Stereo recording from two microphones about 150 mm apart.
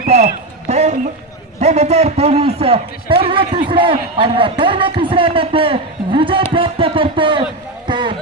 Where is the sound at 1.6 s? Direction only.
50° right (ahead or behind).